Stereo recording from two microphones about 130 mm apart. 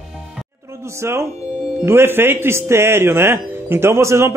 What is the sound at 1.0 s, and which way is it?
Speech, 20° right (ahead or behind).